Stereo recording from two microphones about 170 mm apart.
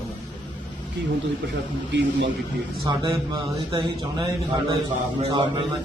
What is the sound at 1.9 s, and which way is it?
Speech, 90° right.